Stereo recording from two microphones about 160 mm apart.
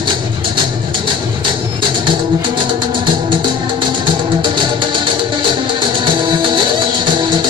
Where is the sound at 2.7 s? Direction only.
30° right (ahead or behind).